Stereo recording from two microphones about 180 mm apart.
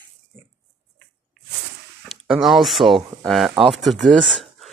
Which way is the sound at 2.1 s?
Centre (ahead or behind).